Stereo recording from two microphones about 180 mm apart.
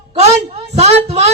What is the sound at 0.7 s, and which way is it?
Speech, 40° right (ahead or behind).